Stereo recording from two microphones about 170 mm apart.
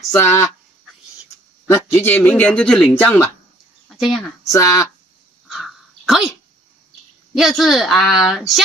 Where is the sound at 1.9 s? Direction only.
10° left (ahead or behind).